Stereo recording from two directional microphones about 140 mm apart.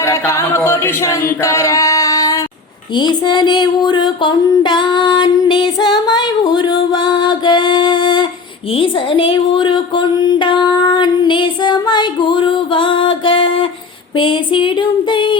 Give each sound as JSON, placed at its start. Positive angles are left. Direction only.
{"t": 0.0, "sound": "singing", "side_deg": 20}
{"t": 2.9, "sound": "a sound", "side_deg": 30}
{"t": 8.7, "sound": "speech", "side_deg": 40}
{"t": 14.2, "sound": "female singing", "side_deg": 35}